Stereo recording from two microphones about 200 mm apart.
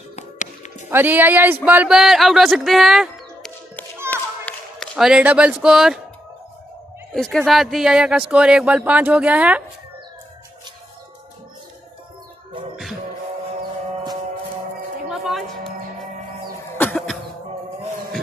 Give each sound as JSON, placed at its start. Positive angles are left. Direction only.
{"t": 0.1, "sound": "music", "side_deg": 35}
{"t": 0.8, "sound": "speech", "side_deg": -10}
{"t": 4.1, "sound": "a sound", "side_deg": 5}
{"t": 7.2, "sound": "speech", "side_deg": 5}
{"t": 15.0, "sound": "a sound", "side_deg": 0}
{"t": 16.7, "sound": "music", "side_deg": 5}